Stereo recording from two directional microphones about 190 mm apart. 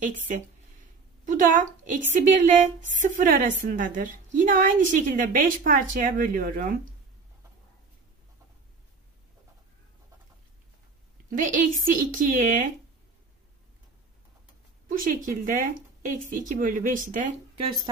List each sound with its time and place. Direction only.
1.2 s a woman's voice: 40° right (ahead or behind)
11.2 s a woman's voice: 45° right (ahead or behind)
15.2 s a woman's voice: 45° right (ahead or behind)
17.6 s speech: 25° right (ahead or behind)